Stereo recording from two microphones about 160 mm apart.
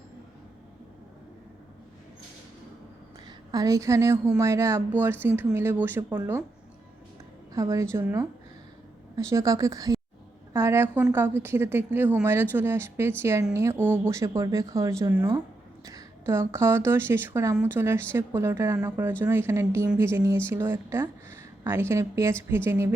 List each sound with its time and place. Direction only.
3.5 s speech: 20° right (ahead or behind)
7.5 s a woman's voice: 20° right (ahead or behind)